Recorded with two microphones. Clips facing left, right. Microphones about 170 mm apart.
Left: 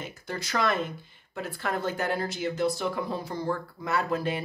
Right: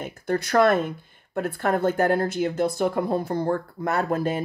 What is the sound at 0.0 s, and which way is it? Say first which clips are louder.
A woman's voice: right 10 dB; 55° right (ahead or behind).